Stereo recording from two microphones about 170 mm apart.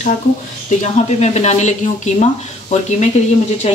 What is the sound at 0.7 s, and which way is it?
Speech, 45° left (ahead or behind).